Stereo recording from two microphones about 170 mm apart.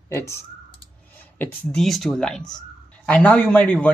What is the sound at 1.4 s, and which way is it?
A man's voice, 5° left (ahead or behind).